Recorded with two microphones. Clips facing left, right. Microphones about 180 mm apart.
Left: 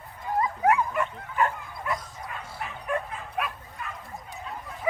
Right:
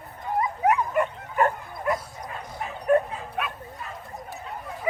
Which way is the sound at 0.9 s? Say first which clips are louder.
Right 3 dB; 40° right (ahead or behind).